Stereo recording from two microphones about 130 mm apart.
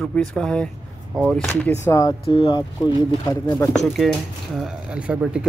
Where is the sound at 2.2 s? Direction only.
45° left (ahead or behind).